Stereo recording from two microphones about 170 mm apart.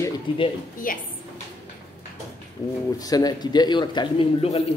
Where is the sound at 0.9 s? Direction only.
55° left (ahead or behind).